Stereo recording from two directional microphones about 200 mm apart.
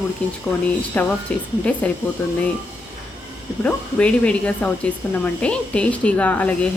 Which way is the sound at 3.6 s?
5° left (ahead or behind).